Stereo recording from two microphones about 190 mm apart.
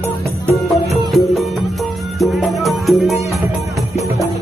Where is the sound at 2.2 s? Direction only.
Centre (ahead or behind).